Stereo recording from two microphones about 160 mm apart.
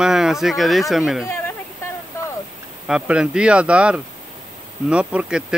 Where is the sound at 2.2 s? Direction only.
15° left (ahead or behind).